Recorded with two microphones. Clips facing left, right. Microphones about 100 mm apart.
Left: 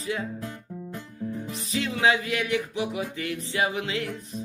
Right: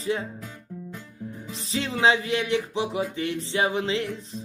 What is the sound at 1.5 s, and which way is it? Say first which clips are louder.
Speech: right 3 dB; 30° right (ahead or behind).